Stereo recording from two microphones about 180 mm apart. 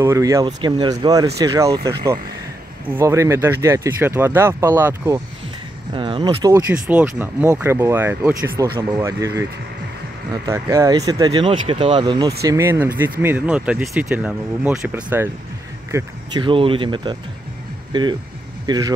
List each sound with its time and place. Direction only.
0.0 s speech: 15° right (ahead or behind)
5.9 s speech: 30° right (ahead or behind)
6.7 s speech: 10° right (ahead or behind)
10.4 s speech: 15° right (ahead or behind)
16.3 s speech: 30° right (ahead or behind)